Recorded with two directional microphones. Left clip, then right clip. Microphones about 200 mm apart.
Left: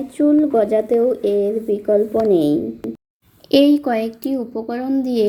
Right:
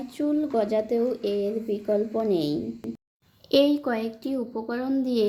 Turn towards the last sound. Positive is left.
turn(degrees=10)  # may be behind; listen again after turning